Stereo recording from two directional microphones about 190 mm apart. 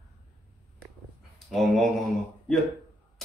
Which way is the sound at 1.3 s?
Centre (ahead or behind).